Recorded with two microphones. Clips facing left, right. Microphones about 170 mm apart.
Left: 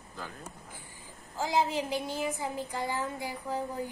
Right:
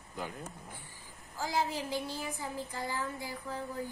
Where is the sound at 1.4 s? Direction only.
20° left (ahead or behind).